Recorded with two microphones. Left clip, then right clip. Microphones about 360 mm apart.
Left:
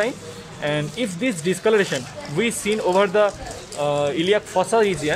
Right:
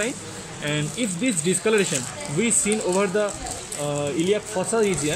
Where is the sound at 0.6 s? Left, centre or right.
Centre.